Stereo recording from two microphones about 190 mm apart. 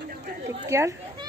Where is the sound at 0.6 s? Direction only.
15° right (ahead or behind).